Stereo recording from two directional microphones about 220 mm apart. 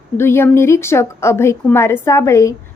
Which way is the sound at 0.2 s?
10° left (ahead or behind).